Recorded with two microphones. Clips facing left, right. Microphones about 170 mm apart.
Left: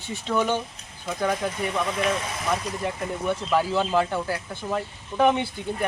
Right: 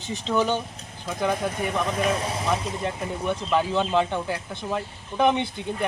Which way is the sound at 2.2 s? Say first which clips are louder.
Right 4 dB; 30° right (ahead or behind).